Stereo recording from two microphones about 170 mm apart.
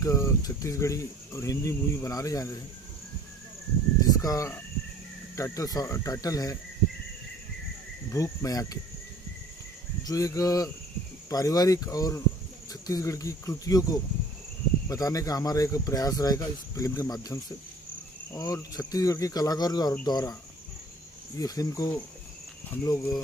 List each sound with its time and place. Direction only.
0.0 s speech: 20° left (ahead or behind)
4.2 s speech: 20° left (ahead or behind)
8.1 s speech: 20° left (ahead or behind)
10.0 s speech: 20° left (ahead or behind)
21.4 s speech: 20° left (ahead or behind)